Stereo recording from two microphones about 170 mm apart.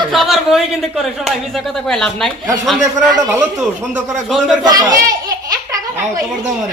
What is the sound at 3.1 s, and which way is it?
Speech, 20° right (ahead or behind).